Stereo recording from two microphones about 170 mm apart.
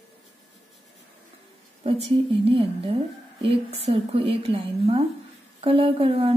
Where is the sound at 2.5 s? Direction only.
35° right (ahead or behind).